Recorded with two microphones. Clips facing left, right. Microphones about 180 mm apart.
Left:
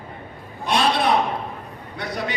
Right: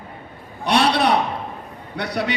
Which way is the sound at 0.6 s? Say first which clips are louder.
Right 2 dB; 70° right (ahead or behind).